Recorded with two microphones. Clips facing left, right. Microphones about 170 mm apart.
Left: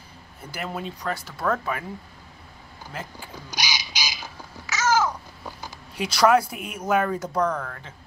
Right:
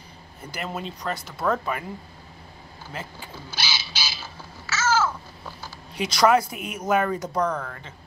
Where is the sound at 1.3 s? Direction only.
10° right (ahead or behind).